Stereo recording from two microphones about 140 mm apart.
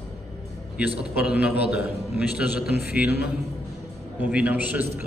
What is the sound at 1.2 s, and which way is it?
A man's voice, 10° right (ahead or behind).